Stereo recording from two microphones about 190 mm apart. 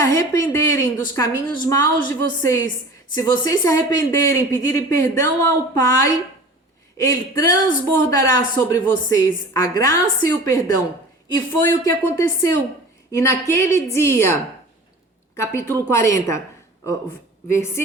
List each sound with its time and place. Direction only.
0.0 s a sound: 15° left (ahead or behind)
1.6 s speech: 15° left (ahead or behind)
15.4 s speech: 15° left (ahead or behind)
17.5 s speech: 15° left (ahead or behind)